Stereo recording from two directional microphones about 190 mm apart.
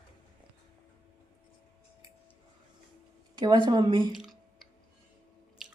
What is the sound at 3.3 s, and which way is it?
Speech, 20° right (ahead or behind).